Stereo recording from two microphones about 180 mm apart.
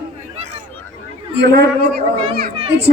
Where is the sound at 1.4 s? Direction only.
70° right (ahead or behind).